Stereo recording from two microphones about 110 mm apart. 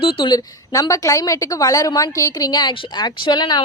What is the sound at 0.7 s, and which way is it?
A woman's voice, 30° left (ahead or behind).